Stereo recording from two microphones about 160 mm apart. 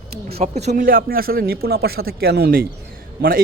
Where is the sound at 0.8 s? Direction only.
65° right (ahead or behind); by 2.6 s 80° right.